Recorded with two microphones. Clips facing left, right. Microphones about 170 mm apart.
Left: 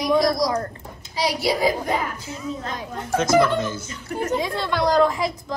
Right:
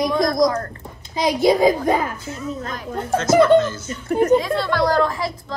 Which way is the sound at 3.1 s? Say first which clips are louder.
Right 5 dB; 10° left (ahead or behind).